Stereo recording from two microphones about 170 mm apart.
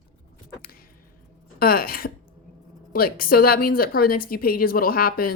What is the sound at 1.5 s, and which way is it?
A woman's voice, 60° left (ahead or behind).